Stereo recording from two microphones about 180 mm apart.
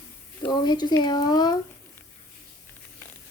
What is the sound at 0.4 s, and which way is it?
Speech, 25° left (ahead or behind).